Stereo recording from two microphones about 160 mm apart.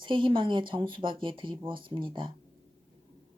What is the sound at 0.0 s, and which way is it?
Speech, 30° right (ahead or behind).